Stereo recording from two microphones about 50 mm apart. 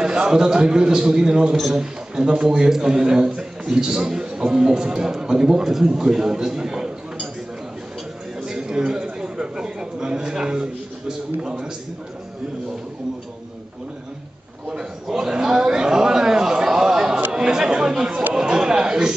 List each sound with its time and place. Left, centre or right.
0.0 s a man's voice: centre
8.5 s a sound: centre
9.0 s a man's voice: centre
15.0 s a sound: centre
17.3 s chatter: centre
18.3 s chuckle: centre